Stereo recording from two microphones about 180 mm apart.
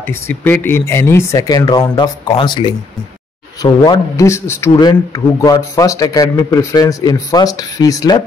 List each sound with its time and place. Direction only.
0.1 s a man's voice: 10° left (ahead or behind)